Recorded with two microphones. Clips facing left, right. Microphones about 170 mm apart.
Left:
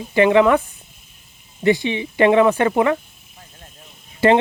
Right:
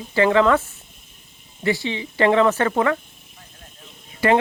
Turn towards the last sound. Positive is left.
turn(degrees=25)  # may be behind; listen again after turning